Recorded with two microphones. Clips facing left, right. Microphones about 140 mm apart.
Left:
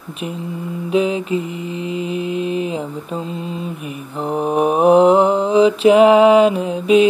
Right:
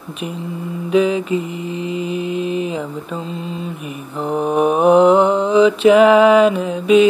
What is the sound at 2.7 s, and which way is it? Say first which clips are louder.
Mantra: even; 30° left (ahead or behind).